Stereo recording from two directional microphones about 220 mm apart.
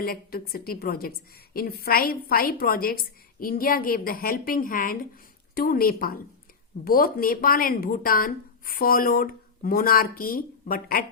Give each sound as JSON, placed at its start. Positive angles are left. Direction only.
{"t": 0.0, "sound": "a woman's voice", "side_deg": 40}